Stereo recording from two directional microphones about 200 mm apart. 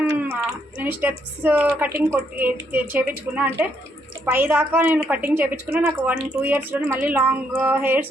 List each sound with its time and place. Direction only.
0.1 s speech: 15° right (ahead or behind)